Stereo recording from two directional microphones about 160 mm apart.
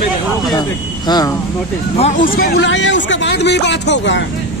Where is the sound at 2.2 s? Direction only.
65° left (ahead or behind); by 4.3 s 90° left.